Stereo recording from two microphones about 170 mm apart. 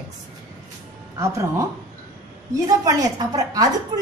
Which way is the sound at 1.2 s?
15° right (ahead or behind).